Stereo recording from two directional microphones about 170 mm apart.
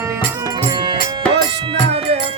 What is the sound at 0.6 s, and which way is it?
Music, 25° right (ahead or behind).